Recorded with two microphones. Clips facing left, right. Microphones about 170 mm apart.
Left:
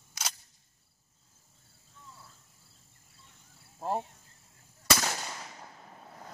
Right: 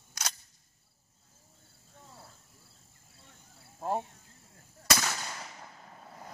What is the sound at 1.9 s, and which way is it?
Cricket, 50° right (ahead or behind).